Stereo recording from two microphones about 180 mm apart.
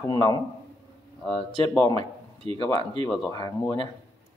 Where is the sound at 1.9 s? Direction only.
35° right (ahead or behind).